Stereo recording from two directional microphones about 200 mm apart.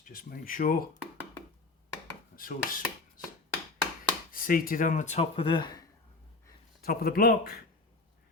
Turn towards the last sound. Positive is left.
turn(degrees=50)  # may be behind; listen again after turning